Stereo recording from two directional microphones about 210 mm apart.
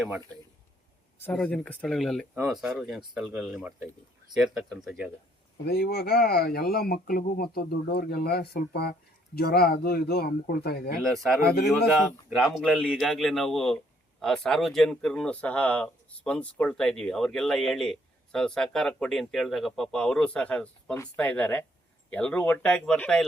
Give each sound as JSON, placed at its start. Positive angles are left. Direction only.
{"t": 1.2, "sound": "speech", "side_deg": 5}
{"t": 5.6, "sound": "speech", "side_deg": 50}
{"t": 11.0, "sound": "speech", "side_deg": 0}
{"t": 11.3, "sound": "speech", "side_deg": 45}
{"t": 12.5, "sound": "speech", "side_deg": 0}